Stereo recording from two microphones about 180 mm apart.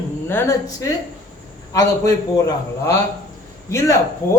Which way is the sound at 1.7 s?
20° left (ahead or behind).